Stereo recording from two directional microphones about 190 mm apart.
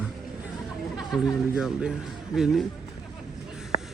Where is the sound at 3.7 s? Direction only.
35° left (ahead or behind).